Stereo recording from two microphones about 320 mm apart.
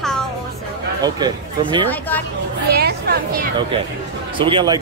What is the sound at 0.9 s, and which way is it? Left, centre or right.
Speech, centre.